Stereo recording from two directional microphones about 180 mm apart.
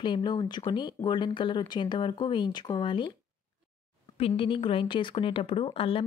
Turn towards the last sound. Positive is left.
turn(degrees=30)  # may be behind; listen again after turning